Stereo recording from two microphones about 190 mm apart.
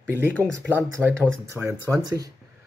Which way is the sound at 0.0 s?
5° left (ahead or behind).